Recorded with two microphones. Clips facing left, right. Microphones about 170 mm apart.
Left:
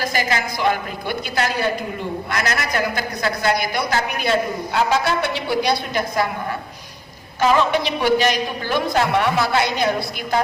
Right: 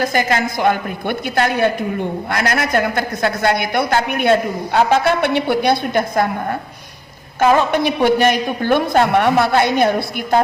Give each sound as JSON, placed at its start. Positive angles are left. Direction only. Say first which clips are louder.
{"t": 0.0, "sound": "a man's voice", "louder": "right 5 dB", "side_deg": -50}